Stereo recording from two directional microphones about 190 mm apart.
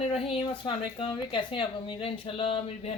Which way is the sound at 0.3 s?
25° left (ahead or behind).